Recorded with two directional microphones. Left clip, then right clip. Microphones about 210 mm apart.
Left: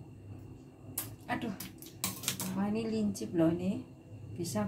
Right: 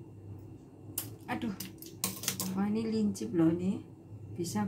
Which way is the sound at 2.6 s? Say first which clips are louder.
Right 1 dB; centre (ahead or behind).